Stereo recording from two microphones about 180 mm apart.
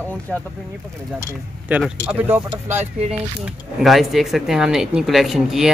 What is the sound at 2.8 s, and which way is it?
Speech, 35° right (ahead or behind).